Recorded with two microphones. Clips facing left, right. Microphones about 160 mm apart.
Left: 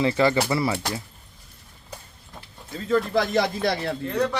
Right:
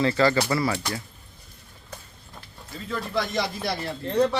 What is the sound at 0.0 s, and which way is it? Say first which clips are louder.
Speech: left 1 dB; 20° left (ahead or behind).